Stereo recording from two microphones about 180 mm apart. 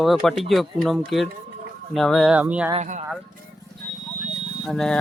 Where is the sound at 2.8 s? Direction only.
45° right (ahead or behind).